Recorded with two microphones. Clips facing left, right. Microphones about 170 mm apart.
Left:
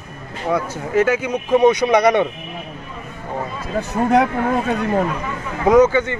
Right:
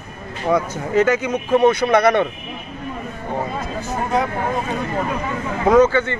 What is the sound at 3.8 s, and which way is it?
Speech, 65° left (ahead or behind).